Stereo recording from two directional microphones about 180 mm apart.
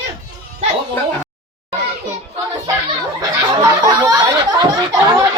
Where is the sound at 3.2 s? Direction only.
20° right (ahead or behind).